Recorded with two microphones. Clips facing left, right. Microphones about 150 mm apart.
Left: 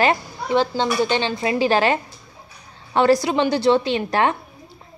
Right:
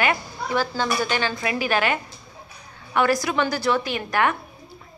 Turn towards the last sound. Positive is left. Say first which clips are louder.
# left 3 dB
turn(degrees=25)  # may be behind; listen again after turning